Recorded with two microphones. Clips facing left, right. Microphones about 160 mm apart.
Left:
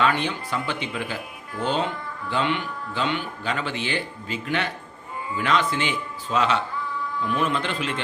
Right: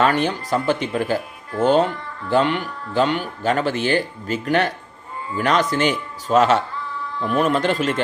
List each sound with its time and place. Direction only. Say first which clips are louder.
0.0 s speech: right 5 dB; 45° right (ahead or behind)